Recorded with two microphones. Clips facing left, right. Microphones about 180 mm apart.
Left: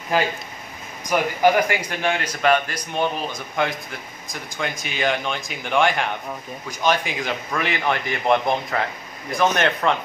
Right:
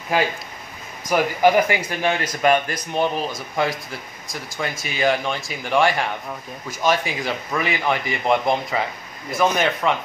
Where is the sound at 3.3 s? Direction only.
5° right (ahead or behind).